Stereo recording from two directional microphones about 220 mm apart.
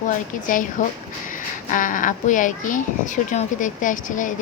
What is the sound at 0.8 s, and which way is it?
Speech, 35° left (ahead or behind).